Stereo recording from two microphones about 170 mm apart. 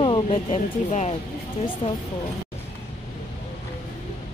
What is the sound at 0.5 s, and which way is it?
Speech, 40° left (ahead or behind).